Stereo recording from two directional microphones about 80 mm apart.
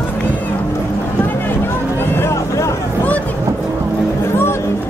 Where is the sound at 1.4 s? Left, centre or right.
Left.